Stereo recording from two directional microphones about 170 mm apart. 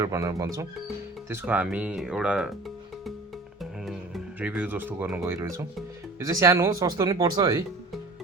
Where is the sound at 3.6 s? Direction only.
Centre (ahead or behind).